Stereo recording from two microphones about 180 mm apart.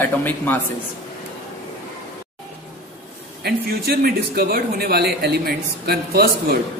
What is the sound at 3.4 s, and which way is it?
Speech, 60° right (ahead or behind).